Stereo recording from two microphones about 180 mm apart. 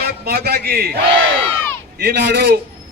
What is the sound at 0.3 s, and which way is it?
Speech, 60° right (ahead or behind).